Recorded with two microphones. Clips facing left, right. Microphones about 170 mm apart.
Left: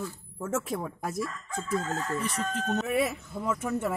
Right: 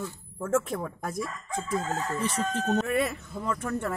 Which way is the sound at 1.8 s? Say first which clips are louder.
Right 2 dB; 15° right (ahead or behind).